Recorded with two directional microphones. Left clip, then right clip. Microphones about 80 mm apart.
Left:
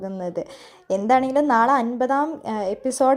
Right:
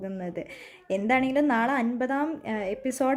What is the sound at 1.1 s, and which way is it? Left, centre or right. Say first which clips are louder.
A woman's voice: left 7 dB; left.